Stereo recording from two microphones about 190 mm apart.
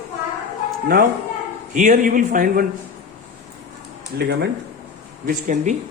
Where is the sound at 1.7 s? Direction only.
45° right (ahead or behind).